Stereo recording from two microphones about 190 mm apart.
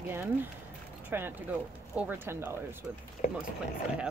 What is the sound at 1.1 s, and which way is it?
Speech, 10° right (ahead or behind).